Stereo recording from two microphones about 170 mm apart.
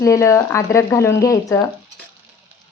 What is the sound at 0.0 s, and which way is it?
Speech, 15° left (ahead or behind).